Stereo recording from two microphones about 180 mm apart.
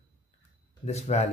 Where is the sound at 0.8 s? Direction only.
40° left (ahead or behind).